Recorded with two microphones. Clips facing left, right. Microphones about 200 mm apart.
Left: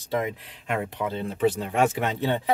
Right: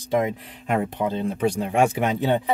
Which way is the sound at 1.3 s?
15° right (ahead or behind).